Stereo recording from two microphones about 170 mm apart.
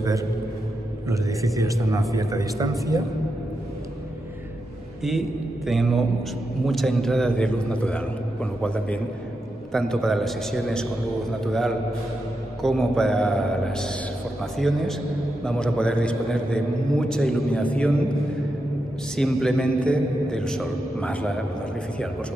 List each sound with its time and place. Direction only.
0.0 s a man's voice: 20° right (ahead or behind)
5.7 s a man's voice: centre (ahead or behind)
19.1 s a man's voice: centre (ahead or behind)